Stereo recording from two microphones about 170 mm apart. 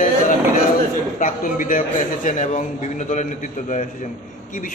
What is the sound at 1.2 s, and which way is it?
A man's voice, 50° left (ahead or behind).